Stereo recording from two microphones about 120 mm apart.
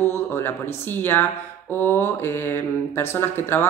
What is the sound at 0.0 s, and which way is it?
A woman's voice, 20° left (ahead or behind).